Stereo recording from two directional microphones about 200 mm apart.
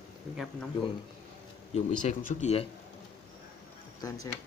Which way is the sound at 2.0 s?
35° left (ahead or behind).